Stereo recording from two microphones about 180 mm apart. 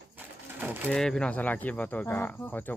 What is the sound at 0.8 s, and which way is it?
Speech, 5° left (ahead or behind).